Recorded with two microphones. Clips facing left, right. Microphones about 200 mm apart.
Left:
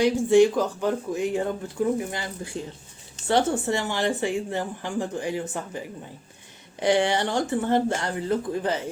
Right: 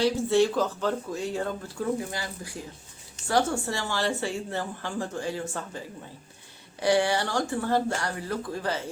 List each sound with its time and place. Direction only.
0.0 s speech: 15° left (ahead or behind)